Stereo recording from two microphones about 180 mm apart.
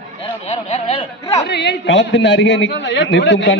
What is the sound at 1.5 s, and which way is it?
A man's voice, 70° left (ahead or behind).